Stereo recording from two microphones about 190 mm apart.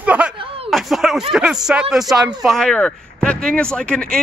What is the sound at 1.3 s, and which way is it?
Speech, 5° right (ahead or behind).